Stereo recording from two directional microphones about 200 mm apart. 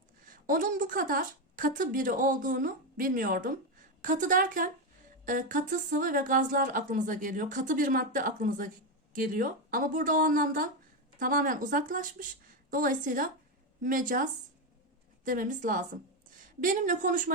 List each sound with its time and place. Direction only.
0.3 s a woman's voice: 45° right (ahead or behind)